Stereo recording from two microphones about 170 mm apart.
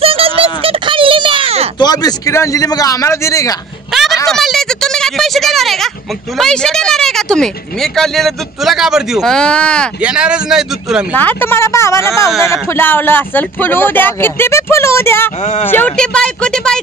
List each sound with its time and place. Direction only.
0.0 s a sound: 35° right (ahead or behind)
1.8 s a man's voice: 25° left (ahead or behind)
4.3 s speech: centre (ahead or behind)
10.0 s speech: 5° right (ahead or behind)
11.1 s speech: 10° left (ahead or behind)
12.3 s speech: centre (ahead or behind)
12.7 s speech: 10° left (ahead or behind)